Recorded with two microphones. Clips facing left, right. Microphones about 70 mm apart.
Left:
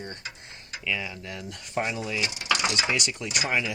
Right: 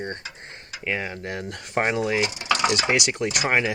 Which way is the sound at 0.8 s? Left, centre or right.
Right.